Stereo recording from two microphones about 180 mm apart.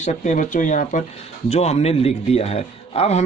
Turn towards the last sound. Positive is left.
turn(degrees=35)  # may be behind; listen again after turning